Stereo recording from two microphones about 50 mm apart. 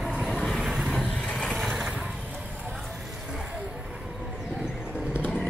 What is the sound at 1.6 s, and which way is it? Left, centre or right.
Vehicle, centre.